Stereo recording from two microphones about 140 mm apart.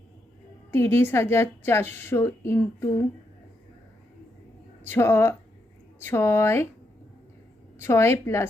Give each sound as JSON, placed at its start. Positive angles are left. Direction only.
{"t": 0.7, "sound": "a woman's voice", "side_deg": 15}
{"t": 4.8, "sound": "a woman's voice", "side_deg": 15}
{"t": 7.8, "sound": "a woman's voice", "side_deg": 20}